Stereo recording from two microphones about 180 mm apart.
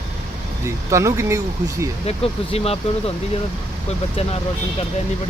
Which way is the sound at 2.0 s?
35° left (ahead or behind).